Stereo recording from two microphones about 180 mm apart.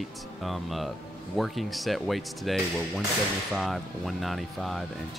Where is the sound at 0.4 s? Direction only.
Centre (ahead or behind).